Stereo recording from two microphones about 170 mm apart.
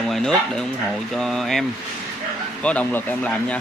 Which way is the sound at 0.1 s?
5° left (ahead or behind).